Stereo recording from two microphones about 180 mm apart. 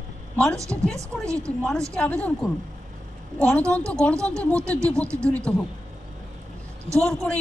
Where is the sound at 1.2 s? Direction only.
15° right (ahead or behind).